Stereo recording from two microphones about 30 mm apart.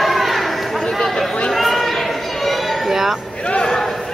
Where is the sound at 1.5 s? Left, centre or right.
Centre.